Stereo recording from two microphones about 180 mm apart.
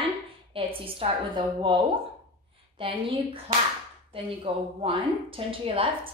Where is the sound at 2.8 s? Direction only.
30° right (ahead or behind).